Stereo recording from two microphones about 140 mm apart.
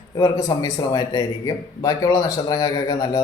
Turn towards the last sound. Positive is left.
turn(degrees=25)  # may be behind; listen again after turning